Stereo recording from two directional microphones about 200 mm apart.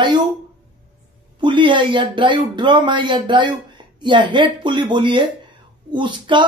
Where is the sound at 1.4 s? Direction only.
25° right (ahead or behind).